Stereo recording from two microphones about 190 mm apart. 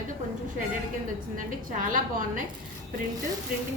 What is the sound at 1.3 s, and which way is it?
A woman's voice, 45° right (ahead or behind).